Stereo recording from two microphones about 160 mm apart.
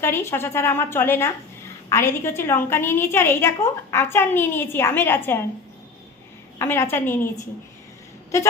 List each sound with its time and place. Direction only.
0.0 s a woman's voice: 15° left (ahead or behind)
6.6 s a woman's voice: 15° left (ahead or behind)